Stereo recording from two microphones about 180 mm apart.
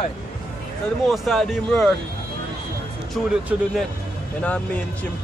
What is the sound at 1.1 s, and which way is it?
Speech, centre (ahead or behind).